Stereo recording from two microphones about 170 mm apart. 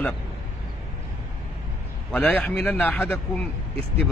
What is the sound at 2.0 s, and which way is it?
Speech, 10° left (ahead or behind).